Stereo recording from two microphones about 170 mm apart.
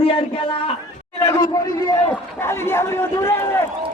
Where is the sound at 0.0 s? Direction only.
35° left (ahead or behind).